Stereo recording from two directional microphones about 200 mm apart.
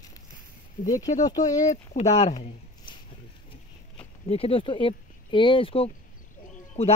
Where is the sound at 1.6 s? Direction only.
30° left (ahead or behind).